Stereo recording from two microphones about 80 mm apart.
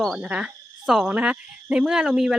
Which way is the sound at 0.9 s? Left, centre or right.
Centre.